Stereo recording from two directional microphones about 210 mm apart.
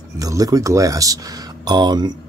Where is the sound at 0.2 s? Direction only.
15° right (ahead or behind).